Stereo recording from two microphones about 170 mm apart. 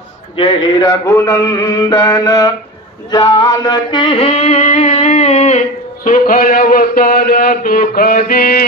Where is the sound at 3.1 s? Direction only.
25° left (ahead or behind).